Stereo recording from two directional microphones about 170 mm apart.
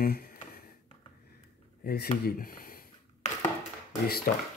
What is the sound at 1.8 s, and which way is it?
A man's voice, 65° left (ahead or behind).